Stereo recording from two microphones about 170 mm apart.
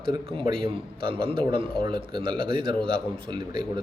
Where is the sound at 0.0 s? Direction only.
30° right (ahead or behind).